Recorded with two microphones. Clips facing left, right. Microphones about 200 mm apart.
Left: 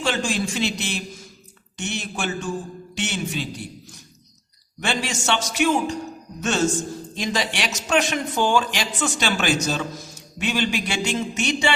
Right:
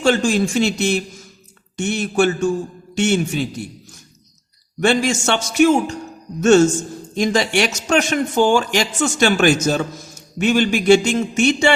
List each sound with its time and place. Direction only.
0.0 s speech: 45° right (ahead or behind)
4.8 s speech: 45° right (ahead or behind)